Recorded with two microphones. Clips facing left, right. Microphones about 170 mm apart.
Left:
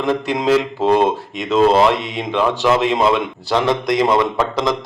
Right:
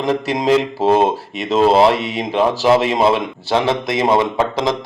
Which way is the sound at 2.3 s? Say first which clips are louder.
Right 2 dB; 35° right (ahead or behind).